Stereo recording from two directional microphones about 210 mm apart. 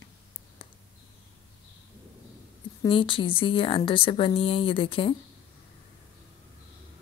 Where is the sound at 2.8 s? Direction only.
25° left (ahead or behind).